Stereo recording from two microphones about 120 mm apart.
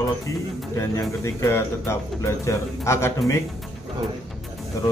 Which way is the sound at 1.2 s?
20° left (ahead or behind).